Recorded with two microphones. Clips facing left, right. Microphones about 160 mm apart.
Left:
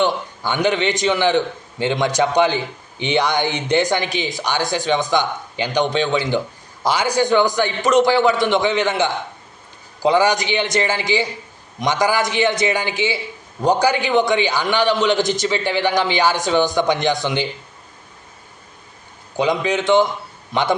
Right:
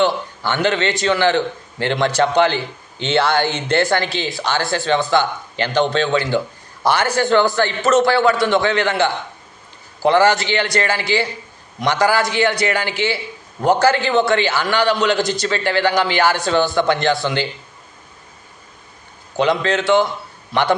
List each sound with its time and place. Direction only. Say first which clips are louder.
0.0 s a man's voice: right 2 dB; 15° left (ahead or behind)
19.4 s a man's voice: right 1 dB; 15° left (ahead or behind)